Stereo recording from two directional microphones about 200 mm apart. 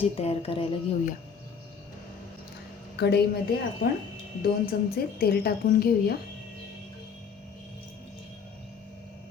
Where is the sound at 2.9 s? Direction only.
55° left (ahead or behind).